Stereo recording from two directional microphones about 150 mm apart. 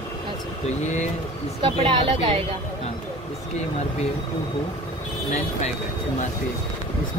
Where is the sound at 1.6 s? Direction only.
35° right (ahead or behind).